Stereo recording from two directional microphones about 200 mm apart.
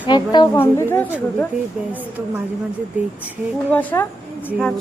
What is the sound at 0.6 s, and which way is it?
Speech, 10° left (ahead or behind).